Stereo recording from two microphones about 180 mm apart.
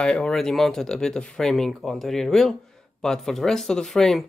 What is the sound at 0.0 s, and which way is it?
Speech, 5° left (ahead or behind).